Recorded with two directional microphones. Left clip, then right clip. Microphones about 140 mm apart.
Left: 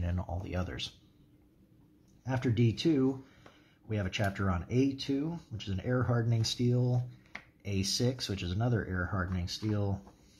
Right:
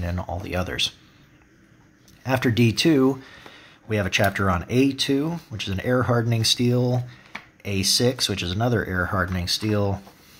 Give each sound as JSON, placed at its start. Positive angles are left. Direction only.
{"t": 0.0, "sound": "speech", "side_deg": -10}
{"t": 2.2, "sound": "speech", "side_deg": -30}
{"t": 3.9, "sound": "speech", "side_deg": -25}
{"t": 7.6, "sound": "speech", "side_deg": -15}